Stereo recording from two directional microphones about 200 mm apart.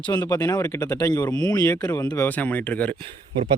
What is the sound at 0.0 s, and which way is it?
Speech, 5° left (ahead or behind).